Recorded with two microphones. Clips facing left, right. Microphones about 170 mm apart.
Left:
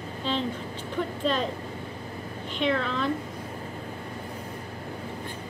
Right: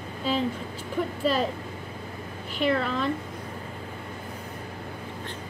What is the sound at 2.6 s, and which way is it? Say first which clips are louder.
Speech: right 1 dB; 5° right (ahead or behind).